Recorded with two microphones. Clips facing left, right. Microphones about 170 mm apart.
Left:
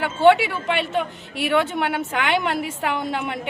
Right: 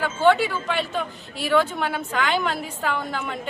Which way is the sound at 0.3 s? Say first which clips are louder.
Left 1 dB; 65° left (ahead or behind).